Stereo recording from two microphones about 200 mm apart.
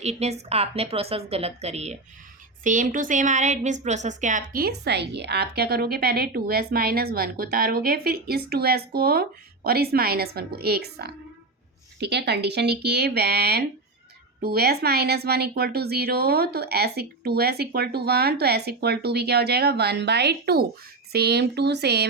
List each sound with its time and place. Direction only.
0.0 s a woman's voice: 35° right (ahead or behind); by 22.1 s 55° right (ahead or behind)